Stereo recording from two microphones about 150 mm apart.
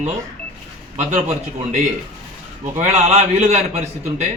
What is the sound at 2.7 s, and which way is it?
A man's voice, 45° right (ahead or behind).